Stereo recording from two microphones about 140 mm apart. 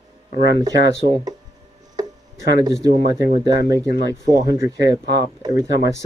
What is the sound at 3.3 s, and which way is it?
Speech, 30° right (ahead or behind).